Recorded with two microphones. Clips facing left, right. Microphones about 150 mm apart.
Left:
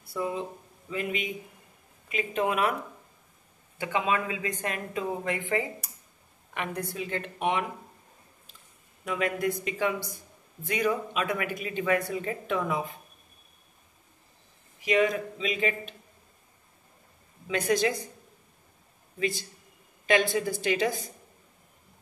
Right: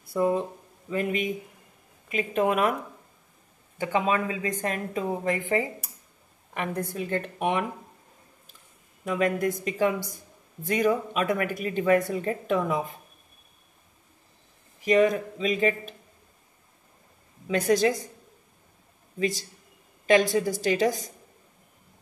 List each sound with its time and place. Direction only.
0.1 s a woman's voice: 50° right (ahead or behind)
3.8 s a woman's voice: 40° right (ahead or behind)
9.0 s speech: 40° right (ahead or behind)
14.9 s speech: 45° right (ahead or behind)
17.5 s a woman's voice: 40° right (ahead or behind)
19.1 s a man's voice: 40° right (ahead or behind)